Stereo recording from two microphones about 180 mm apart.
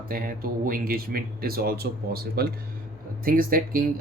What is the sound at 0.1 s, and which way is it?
Speech, 50° right (ahead or behind).